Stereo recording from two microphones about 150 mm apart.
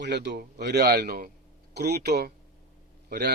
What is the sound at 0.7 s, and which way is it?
Speech, 90° right.